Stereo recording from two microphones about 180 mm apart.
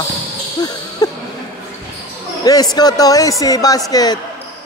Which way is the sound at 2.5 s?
20° left (ahead or behind).